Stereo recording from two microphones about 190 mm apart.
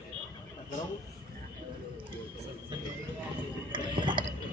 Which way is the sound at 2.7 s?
25° right (ahead or behind).